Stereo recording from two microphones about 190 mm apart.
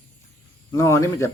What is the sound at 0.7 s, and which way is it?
Speech, 15° left (ahead or behind).